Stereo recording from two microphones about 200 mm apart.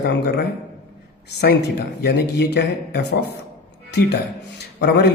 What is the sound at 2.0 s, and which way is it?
A man's voice, 55° left (ahead or behind).